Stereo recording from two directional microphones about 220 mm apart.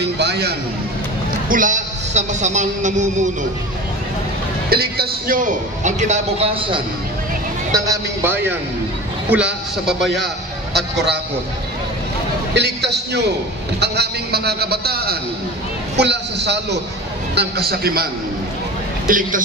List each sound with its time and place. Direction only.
0.0 s a man's voice: 50° right (ahead or behind)
1.5 s a man's voice: 35° right (ahead or behind)
4.6 s a man's voice: 45° right (ahead or behind); by 6.8 s 25° right (ahead or behind)
7.7 s a man's voice: 15° right (ahead or behind)
12.5 s a man's voice: 50° right (ahead or behind)
19.0 s a man's voice: 35° right (ahead or behind)